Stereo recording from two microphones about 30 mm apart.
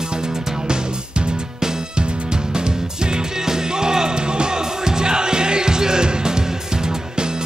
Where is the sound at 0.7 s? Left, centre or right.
Right.